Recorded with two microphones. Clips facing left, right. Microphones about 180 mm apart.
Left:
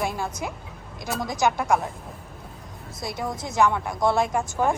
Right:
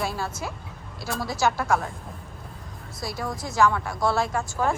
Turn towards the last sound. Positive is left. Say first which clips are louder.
# left 2 dB
turn(degrees=20)  # may be behind; listen again after turning